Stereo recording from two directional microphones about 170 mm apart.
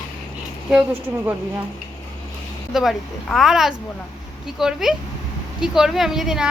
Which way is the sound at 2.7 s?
Centre (ahead or behind).